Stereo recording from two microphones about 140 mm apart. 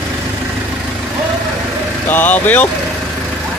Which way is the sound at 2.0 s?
15° left (ahead or behind).